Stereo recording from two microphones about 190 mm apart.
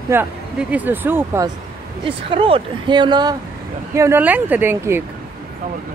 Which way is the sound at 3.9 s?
10° right (ahead or behind).